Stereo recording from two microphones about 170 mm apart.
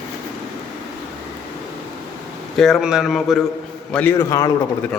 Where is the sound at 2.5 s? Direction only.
Centre (ahead or behind).